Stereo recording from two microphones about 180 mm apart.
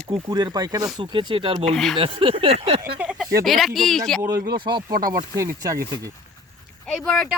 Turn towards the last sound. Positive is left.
turn(degrees=5)  # may be behind; listen again after turning